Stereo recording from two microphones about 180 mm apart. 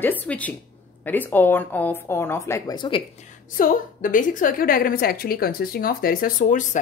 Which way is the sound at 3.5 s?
50° left (ahead or behind).